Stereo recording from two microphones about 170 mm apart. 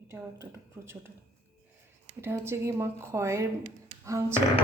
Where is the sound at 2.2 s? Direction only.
15° right (ahead or behind).